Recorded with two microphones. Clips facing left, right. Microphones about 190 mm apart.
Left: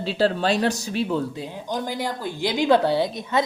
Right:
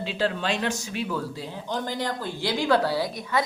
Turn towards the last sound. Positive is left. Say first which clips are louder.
# left 4 dB
turn(degrees=25)  # may be behind; listen again after turning